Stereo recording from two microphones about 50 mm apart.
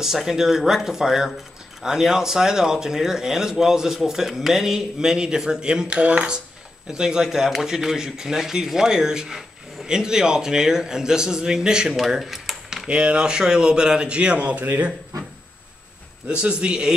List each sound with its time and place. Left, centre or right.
0.0 s speech: centre
12.8 s speech: centre
16.3 s speech: right